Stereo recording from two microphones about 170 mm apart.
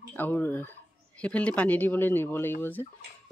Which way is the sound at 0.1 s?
10° left (ahead or behind).